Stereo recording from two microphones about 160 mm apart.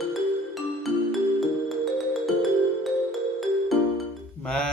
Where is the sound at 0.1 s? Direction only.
Centre (ahead or behind).